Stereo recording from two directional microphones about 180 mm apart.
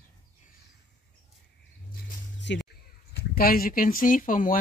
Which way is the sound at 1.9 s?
80° left.